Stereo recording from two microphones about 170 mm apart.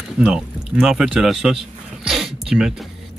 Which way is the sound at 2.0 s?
Centre (ahead or behind).